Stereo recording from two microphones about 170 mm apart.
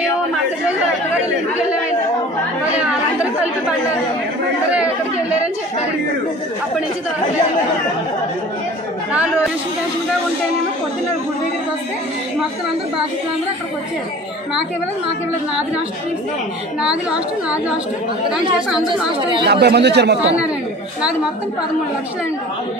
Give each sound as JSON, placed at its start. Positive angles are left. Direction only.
{"t": 9.1, "sound": "a woman's voice", "side_deg": -10}
{"t": 16.8, "sound": "a woman's voice", "side_deg": -5}
{"t": 19.4, "sound": "speech", "side_deg": -75}